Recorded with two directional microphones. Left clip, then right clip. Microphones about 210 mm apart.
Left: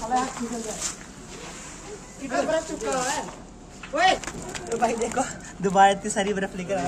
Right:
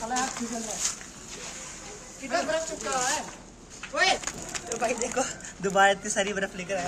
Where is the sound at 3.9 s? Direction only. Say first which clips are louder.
Left 4 dB; 55° right (ahead or behind).